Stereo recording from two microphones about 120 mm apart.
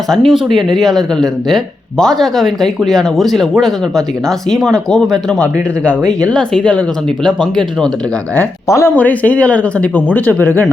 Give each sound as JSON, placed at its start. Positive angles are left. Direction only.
{"t": 0.1, "sound": "speech", "side_deg": 0}
{"t": 8.4, "sound": "speech", "side_deg": 25}
{"t": 9.0, "sound": "speech", "side_deg": 15}